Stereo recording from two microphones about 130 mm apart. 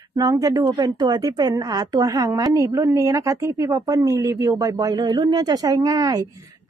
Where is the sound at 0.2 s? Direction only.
30° right (ahead or behind).